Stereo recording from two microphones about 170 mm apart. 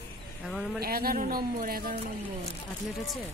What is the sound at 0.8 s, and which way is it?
A woman's voice, 60° right (ahead or behind).